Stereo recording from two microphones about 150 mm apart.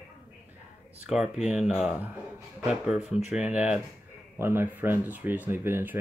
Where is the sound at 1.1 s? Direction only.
5° right (ahead or behind).